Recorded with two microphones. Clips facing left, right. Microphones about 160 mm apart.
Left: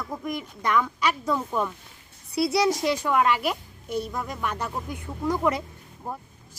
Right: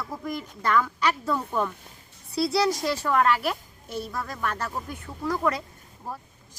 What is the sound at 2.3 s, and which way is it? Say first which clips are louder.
Speech: left 1 dB; 20° left (ahead or behind).